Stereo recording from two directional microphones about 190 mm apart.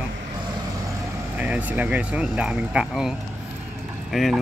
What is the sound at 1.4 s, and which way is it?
Speech, 5° right (ahead or behind).